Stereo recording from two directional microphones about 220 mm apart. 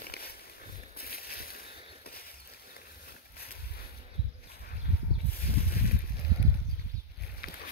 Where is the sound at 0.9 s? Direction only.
45° left (ahead or behind).